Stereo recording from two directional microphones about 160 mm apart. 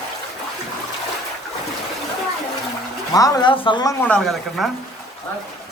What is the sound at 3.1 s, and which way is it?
Speech, 20° left (ahead or behind).